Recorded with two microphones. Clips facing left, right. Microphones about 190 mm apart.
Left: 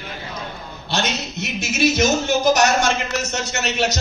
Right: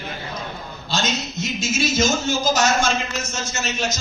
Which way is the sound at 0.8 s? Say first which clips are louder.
Left 1 dB; 65° left (ahead or behind).